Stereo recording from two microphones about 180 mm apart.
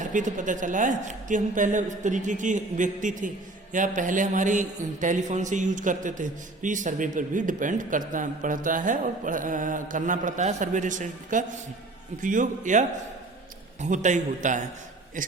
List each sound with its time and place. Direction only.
0.0 s a woman's voice: 45° right (ahead or behind)
13.8 s a woman's voice: 45° right (ahead or behind)